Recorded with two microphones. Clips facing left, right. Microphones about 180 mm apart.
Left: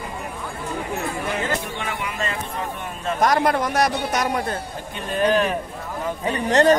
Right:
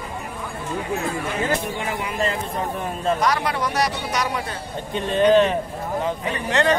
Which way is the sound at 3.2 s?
50° left (ahead or behind).